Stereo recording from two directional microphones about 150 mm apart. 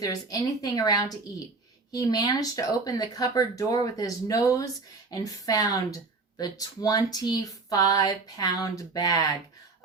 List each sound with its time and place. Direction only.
0.0 s speech: 25° left (ahead or behind)